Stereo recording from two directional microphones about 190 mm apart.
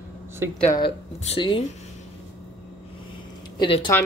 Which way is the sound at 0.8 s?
25° left (ahead or behind).